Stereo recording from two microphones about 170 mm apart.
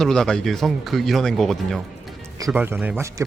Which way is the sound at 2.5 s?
15° right (ahead or behind).